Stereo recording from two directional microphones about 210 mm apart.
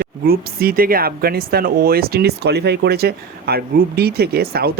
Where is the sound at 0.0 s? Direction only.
45° right (ahead or behind).